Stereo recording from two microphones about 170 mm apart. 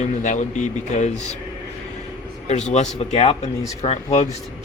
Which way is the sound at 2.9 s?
35° left (ahead or behind).